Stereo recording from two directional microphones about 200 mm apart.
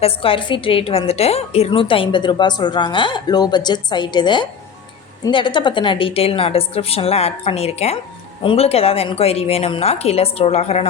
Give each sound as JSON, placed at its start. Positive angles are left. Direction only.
{"t": 0.0, "sound": "a woman's voice", "side_deg": 25}